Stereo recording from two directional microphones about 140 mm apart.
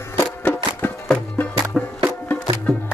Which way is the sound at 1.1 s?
Centre (ahead or behind).